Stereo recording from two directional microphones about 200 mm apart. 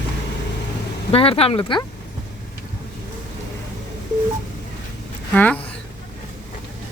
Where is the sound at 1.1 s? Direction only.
30° left (ahead or behind).